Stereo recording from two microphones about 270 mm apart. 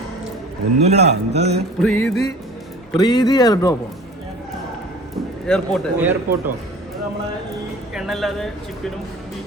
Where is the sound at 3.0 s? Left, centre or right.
Centre.